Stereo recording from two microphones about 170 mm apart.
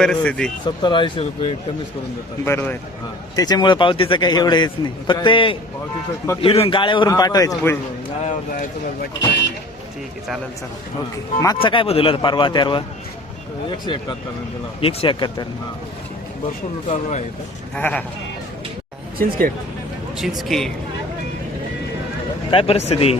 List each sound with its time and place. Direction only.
0.0 s speech: 5° left (ahead or behind)
0.6 s a man's voice: 25° left (ahead or behind)
2.4 s speech: 15° left (ahead or behind)
3.3 s a man's voice: 25° left (ahead or behind)
8.2 s speech: 50° left (ahead or behind)
11.6 s a man's voice: 30° left (ahead or behind)
17.7 s speech: 10° left (ahead or behind)
19.2 s speech: 60° right (ahead or behind)
20.1 s speech: centre (ahead or behind)
22.5 s speech: 35° left (ahead or behind)